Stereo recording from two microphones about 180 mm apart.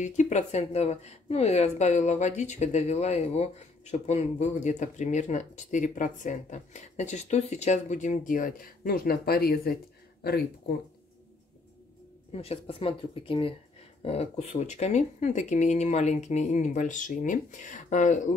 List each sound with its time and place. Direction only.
0.0 s speech: 40° left (ahead or behind); by 9.8 s 60° left (ahead or behind)
12.3 s speech: 35° left (ahead or behind)